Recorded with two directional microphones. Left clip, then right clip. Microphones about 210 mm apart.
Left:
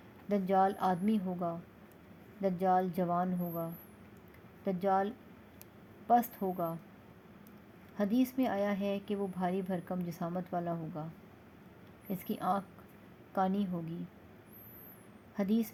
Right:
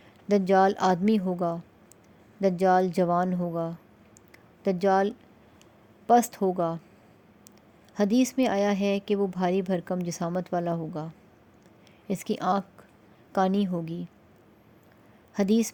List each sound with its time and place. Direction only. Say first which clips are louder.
0.3 s a woman's voice: right 8 dB; 50° right (ahead or behind)
7.9 s a woman's voice: right 8 dB; 50° right (ahead or behind)
15.4 s a woman's voice: right 9 dB; 55° right (ahead or behind)